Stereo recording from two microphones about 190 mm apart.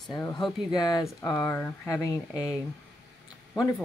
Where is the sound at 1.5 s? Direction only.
15° left (ahead or behind).